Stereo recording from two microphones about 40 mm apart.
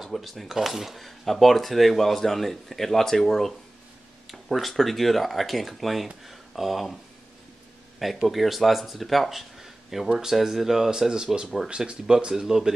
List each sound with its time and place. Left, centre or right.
0.0 s speech: centre
8.3 s speech: centre; by 12.0 s right
12.4 s speech: centre